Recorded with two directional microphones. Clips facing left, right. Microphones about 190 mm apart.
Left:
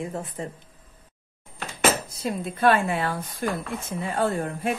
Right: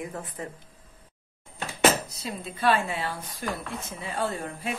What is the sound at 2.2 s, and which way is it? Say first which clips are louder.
A woman's voice: left 6 dB; 50° left (ahead or behind).